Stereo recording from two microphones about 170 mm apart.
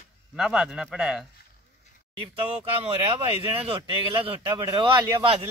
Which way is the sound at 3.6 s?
30° right (ahead or behind).